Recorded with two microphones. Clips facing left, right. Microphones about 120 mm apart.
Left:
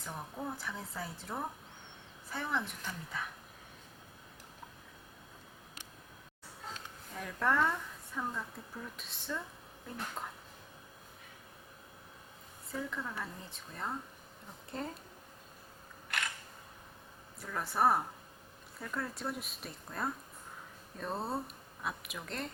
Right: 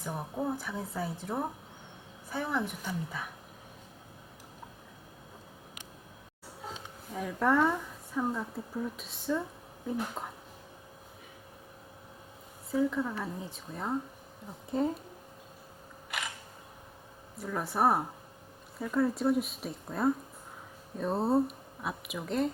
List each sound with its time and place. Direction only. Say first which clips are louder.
0.0 s speech: right 7 dB; 10° right (ahead or behind)
6.6 s a sound: right 3 dB; 10° right (ahead or behind)
8.5 s speech: right 10 dB; 5° right (ahead or behind)
12.7 s speech: right 10 dB; 10° right (ahead or behind)
16.0 s a sound: even; 5° right (ahead or behind)
17.4 s speech: right 3 dB; centre (ahead or behind)
21.2 s speech: right 12 dB; 25° right (ahead or behind)
21.4 s speech: right 5 dB; 5° right (ahead or behind)